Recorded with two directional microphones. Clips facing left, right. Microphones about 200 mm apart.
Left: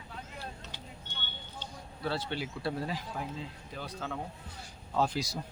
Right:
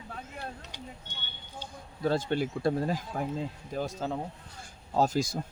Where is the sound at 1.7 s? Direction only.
50° right (ahead or behind).